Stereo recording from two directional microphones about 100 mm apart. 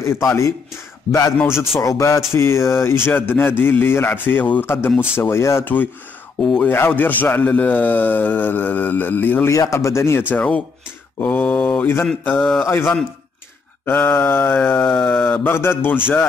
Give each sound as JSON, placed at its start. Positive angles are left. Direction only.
{"t": 0.0, "sound": "a man's voice", "side_deg": 30}
{"t": 1.8, "sound": "a sound", "side_deg": 30}
{"t": 2.3, "sound": "a man's voice", "side_deg": 25}
{"t": 6.4, "sound": "speech", "side_deg": 5}
{"t": 6.9, "sound": "a man's voice", "side_deg": 20}
{"t": 9.5, "sound": "a man's voice", "side_deg": 30}
{"t": 10.3, "sound": "a man's voice", "side_deg": 15}